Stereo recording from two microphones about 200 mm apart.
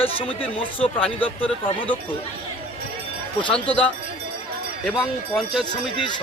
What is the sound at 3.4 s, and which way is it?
Speech, 25° left (ahead or behind).